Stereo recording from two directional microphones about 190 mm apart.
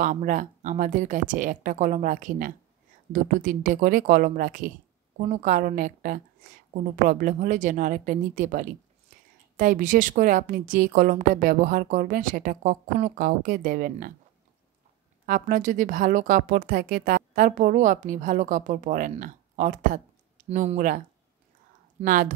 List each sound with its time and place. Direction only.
0.0 s a woman's voice: 40° right (ahead or behind)
15.2 s speech: 45° right (ahead or behind)
22.0 s speech: 45° right (ahead or behind)